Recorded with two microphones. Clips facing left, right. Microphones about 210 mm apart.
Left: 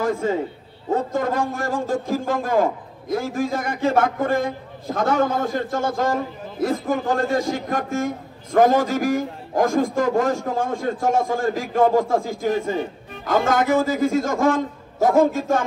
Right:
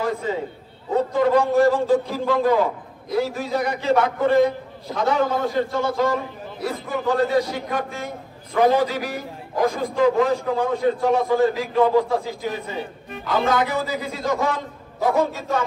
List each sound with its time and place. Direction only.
0.2 s a man's voice: 45° left (ahead or behind)